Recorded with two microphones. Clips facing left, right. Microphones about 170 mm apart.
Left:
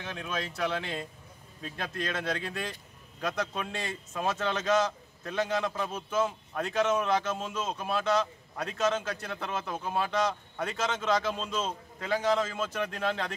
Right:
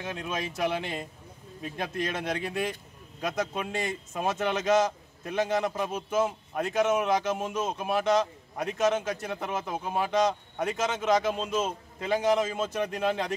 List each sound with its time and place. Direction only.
0.0 s a man's voice: 15° right (ahead or behind)